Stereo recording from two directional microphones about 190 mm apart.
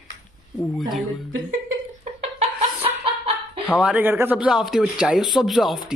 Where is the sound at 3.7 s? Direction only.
5° right (ahead or behind).